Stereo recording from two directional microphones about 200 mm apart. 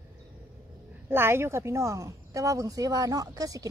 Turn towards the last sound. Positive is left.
turn(degrees=-15)  # may be behind; listen again after turning